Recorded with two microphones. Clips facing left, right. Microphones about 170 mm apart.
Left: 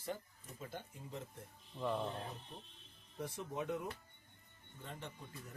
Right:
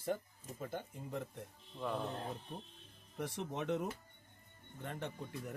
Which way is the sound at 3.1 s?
75° right (ahead or behind).